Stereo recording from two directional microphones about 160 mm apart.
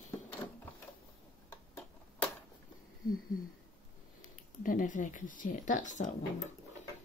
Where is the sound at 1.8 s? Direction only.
10° left (ahead or behind).